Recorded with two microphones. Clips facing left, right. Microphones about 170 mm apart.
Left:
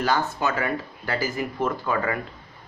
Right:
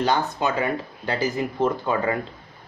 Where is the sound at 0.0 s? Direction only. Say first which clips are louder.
Right 1 dB; 20° right (ahead or behind).